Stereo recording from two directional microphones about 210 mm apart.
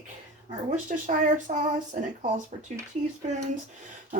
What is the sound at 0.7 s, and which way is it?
Speech, 35° right (ahead or behind).